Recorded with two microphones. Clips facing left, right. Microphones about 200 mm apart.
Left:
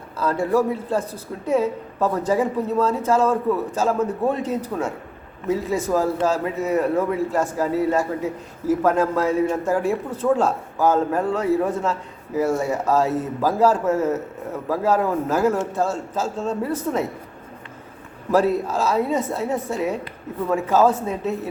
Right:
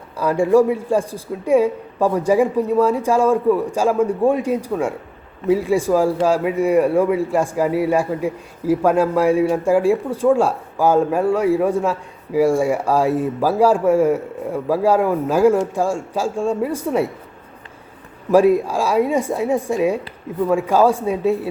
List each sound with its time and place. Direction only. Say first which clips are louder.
0.2 s a man's voice: right 6 dB; 15° right (ahead or behind)
18.3 s a man's voice: right 5 dB; 10° right (ahead or behind)